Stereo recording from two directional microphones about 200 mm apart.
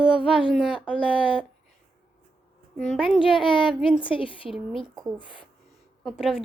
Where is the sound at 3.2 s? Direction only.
25° left (ahead or behind).